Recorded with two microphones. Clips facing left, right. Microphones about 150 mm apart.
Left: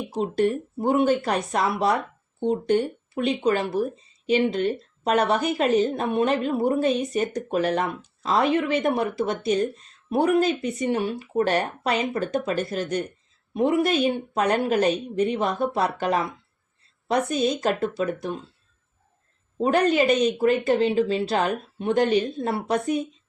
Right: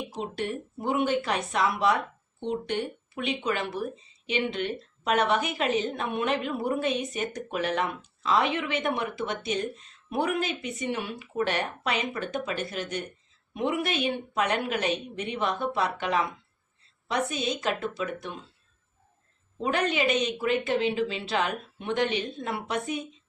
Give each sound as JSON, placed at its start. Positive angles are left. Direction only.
{"t": 0.1, "sound": "a woman's voice", "side_deg": 40}
{"t": 19.5, "sound": "a woman's voice", "side_deg": 40}